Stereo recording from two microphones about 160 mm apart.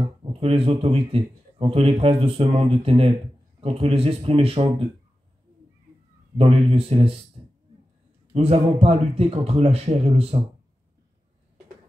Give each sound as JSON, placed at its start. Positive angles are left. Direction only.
{"t": 0.2, "sound": "a man's voice", "side_deg": -35}
{"t": 6.3, "sound": "a man's voice", "side_deg": -35}
{"t": 8.3, "sound": "a man's voice", "side_deg": -40}